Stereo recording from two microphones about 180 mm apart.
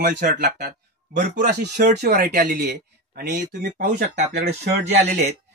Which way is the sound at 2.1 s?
50° right (ahead or behind).